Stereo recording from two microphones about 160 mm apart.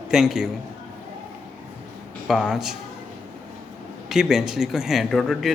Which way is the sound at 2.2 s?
Centre (ahead or behind).